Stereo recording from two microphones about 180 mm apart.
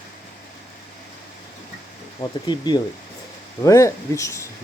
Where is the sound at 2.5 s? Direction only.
25° left (ahead or behind).